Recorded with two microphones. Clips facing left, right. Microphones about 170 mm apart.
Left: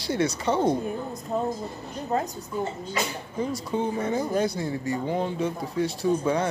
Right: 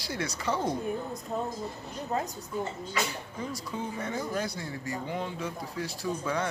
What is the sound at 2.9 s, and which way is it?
Speech, 25° left (ahead or behind).